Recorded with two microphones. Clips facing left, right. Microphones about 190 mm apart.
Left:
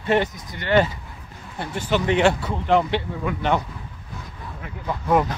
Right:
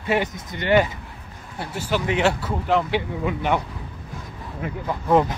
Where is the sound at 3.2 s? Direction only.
15° right (ahead or behind).